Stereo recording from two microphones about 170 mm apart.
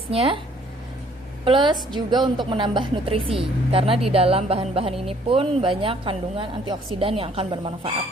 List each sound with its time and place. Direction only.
0.1 s a woman's voice: 35° right (ahead or behind)
1.5 s a woman's voice: 25° right (ahead or behind)